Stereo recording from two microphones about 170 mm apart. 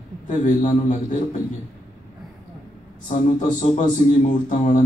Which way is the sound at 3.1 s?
45° left (ahead or behind).